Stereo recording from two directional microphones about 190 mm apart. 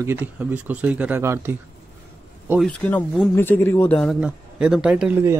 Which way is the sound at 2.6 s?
5° left (ahead or behind).